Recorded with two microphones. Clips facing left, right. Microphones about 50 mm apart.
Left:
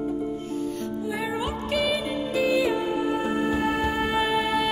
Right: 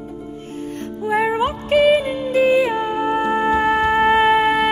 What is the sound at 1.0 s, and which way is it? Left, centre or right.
Music, right.